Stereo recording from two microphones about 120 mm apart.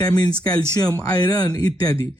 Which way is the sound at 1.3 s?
30° left (ahead or behind).